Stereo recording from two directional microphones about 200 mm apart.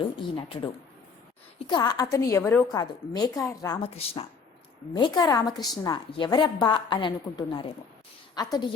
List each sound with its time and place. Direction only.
0.2 s a woman's voice: 25° left (ahead or behind)
1.6 s a woman's voice: 20° left (ahead or behind)
3.8 s a woman's voice: 30° left (ahead or behind)
4.9 s a woman's voice: 15° left (ahead or behind)